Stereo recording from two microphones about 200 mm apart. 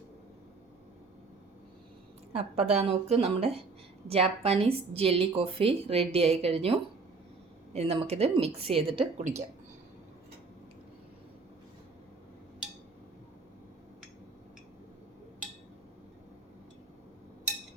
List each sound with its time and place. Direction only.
2.3 s a woman's voice: 30° right (ahead or behind)